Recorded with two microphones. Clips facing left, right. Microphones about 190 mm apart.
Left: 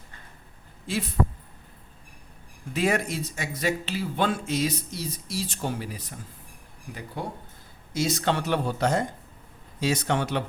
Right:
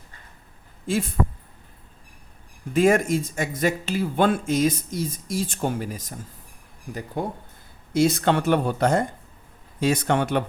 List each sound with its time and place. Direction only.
0.9 s speech: 50° right (ahead or behind)
2.7 s speech: 50° right (ahead or behind)